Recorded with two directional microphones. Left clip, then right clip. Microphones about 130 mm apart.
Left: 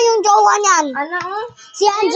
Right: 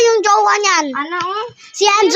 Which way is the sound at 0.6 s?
10° right (ahead or behind).